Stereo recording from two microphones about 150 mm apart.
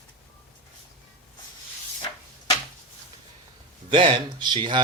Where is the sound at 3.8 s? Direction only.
35° right (ahead or behind).